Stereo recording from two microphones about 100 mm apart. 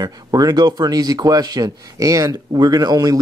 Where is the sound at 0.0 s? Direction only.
40° right (ahead or behind).